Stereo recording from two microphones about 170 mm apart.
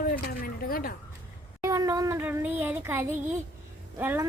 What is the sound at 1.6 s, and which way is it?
Child singing, 20° right (ahead or behind).